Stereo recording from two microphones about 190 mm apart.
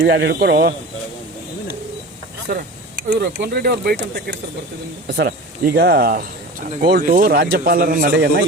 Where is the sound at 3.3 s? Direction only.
55° right (ahead or behind).